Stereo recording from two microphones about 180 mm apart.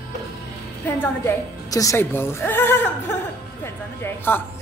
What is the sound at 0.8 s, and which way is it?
A woman's voice, 10° left (ahead or behind).